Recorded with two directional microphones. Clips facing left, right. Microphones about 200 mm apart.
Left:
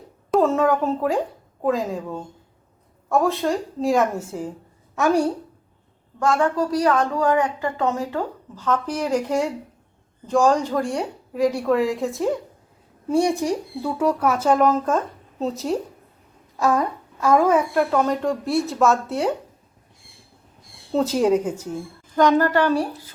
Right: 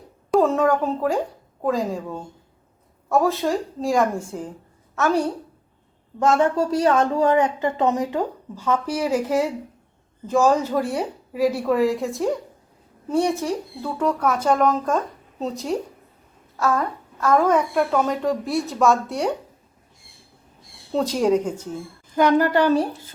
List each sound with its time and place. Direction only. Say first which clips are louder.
0.3 s a woman's voice: even; centre (ahead or behind)
6.1 s a woman's voice: right 2 dB; 20° right (ahead or behind); by 12.4 s centre (ahead or behind)
13.1 s a woman's voice: left 2 dB; 10° left (ahead or behind)
16.6 s a woman's voice: left 2 dB; 15° left (ahead or behind)
20.9 s a woman's voice: left 1 dB; 5° left (ahead or behind)
22.1 s a woman's voice: even; 10° right (ahead or behind)